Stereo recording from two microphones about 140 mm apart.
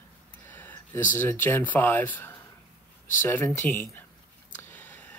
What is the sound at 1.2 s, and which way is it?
Speech, 15° left (ahead or behind).